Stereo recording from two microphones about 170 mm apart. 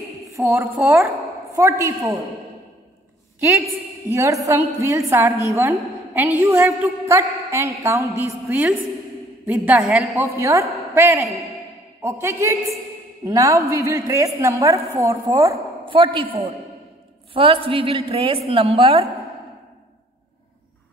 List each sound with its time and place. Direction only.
0.3 s a woman's voice: 15° right (ahead or behind)
4.1 s a woman's voice: 15° right (ahead or behind)
10.1 s a woman's voice: 15° right (ahead or behind)
15.9 s a woman's voice: 30° right (ahead or behind)